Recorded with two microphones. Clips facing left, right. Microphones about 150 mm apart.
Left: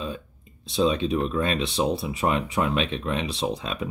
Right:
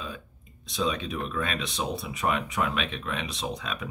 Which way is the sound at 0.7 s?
30° left (ahead or behind).